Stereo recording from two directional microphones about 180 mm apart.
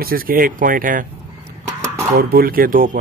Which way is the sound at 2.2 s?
55° right (ahead or behind).